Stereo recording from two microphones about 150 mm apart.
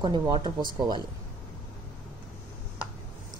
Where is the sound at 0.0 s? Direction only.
30° right (ahead or behind).